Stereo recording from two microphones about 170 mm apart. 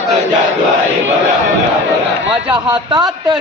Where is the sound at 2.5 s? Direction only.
25° right (ahead or behind).